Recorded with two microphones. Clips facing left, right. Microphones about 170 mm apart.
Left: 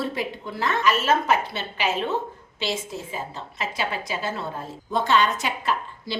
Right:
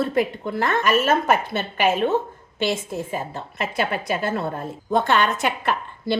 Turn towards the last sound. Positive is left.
turn(degrees=-60)  # may be behind; listen again after turning